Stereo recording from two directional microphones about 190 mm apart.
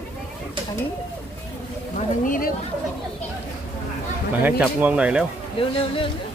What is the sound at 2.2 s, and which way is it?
Speech, 45° left (ahead or behind).